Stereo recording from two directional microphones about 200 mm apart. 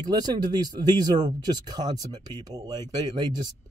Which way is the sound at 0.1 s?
20° right (ahead or behind).